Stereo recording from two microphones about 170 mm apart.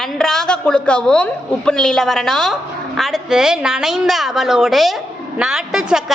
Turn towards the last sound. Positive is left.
turn(degrees=-5)  # may be behind; listen again after turning